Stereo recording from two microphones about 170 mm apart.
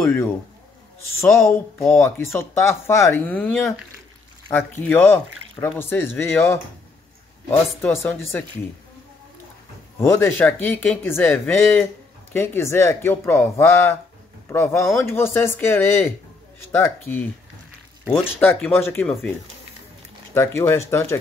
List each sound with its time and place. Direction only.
1.2 s speech: 15° left (ahead or behind)
7.8 s speech: 15° left (ahead or behind)
9.9 s speech: 15° left (ahead or behind)
18.4 s speech: 10° left (ahead or behind)
20.3 s speech: 15° left (ahead or behind)